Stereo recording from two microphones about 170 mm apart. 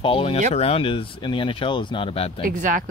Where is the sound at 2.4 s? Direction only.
50° right (ahead or behind).